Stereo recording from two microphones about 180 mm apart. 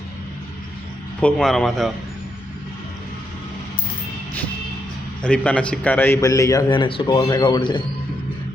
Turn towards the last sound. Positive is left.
turn(degrees=25)  # may be behind; listen again after turning